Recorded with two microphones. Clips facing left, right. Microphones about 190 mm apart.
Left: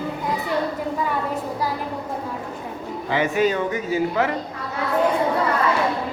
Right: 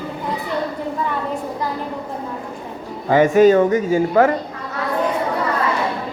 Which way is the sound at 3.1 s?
45° right (ahead or behind).